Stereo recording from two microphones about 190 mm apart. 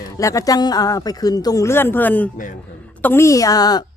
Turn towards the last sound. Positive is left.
turn(degrees=20)  # may be behind; listen again after turning